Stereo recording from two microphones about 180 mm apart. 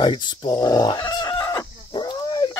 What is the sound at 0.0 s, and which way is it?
Chicken, 25° left (ahead or behind).